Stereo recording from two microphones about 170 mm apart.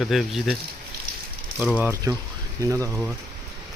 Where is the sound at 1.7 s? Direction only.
15° right (ahead or behind).